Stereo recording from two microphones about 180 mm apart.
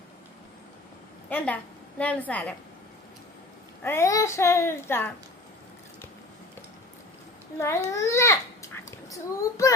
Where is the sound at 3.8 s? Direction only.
15° left (ahead or behind).